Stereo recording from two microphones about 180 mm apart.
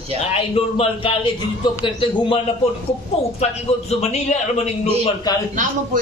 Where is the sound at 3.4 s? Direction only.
35° left (ahead or behind).